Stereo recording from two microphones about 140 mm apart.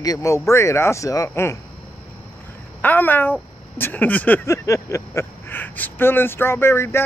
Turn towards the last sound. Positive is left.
turn(degrees=20)  # may be behind; listen again after turning